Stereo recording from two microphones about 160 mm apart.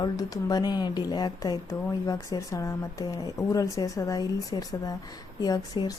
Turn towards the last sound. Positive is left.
turn(degrees=25)  # may be behind; listen again after turning